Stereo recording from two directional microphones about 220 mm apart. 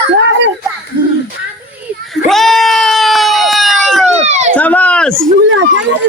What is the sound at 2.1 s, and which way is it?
Bleat, centre (ahead or behind).